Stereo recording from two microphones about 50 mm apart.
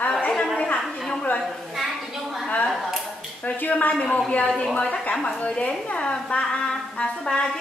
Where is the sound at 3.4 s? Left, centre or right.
Left.